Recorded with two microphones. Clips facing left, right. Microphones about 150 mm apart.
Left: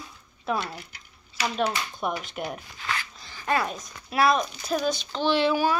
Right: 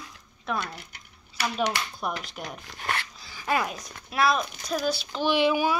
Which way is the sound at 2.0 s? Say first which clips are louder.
Left 3 dB; centre (ahead or behind).